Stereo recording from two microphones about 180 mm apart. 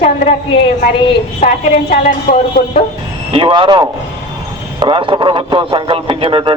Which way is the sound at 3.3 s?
30° right (ahead or behind).